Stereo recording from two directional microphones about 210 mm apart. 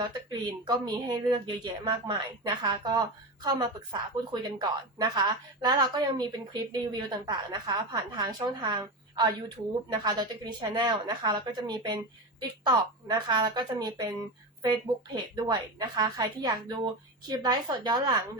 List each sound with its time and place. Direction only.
0.6 s a woman's voice: 20° right (ahead or behind)